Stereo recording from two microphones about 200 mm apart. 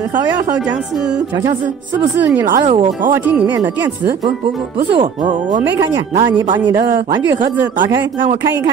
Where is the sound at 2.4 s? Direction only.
40° right (ahead or behind).